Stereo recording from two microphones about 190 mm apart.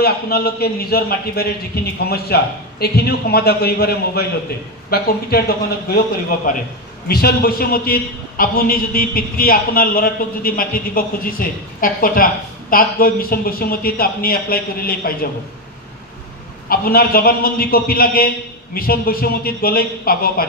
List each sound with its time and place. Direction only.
0.0 s a man's voice: 55° left (ahead or behind)
7.1 s a man's voice: 50° left (ahead or behind)
16.6 s a man's voice: 50° left (ahead or behind)